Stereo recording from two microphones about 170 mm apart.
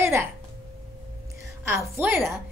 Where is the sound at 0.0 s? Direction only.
15° right (ahead or behind).